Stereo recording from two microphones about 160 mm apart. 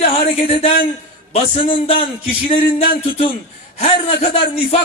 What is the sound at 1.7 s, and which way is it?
Speech, 35° left (ahead or behind).